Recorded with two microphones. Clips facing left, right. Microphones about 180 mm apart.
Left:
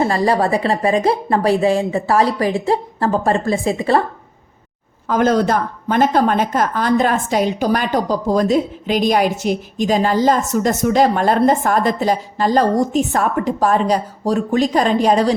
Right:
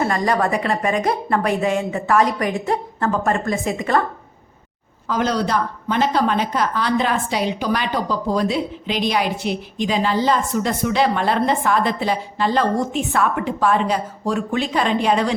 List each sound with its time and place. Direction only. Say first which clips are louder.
0.0 s a woman's voice: left 3 dB; 30° left (ahead or behind)
5.0 s a woman's voice: left 6 dB; 50° left (ahead or behind)